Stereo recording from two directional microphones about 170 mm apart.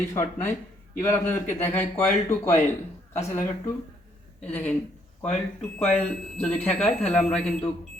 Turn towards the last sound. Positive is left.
turn(degrees=5)  # may be behind; listen again after turning